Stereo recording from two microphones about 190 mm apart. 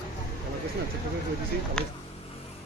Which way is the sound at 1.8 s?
5° left (ahead or behind).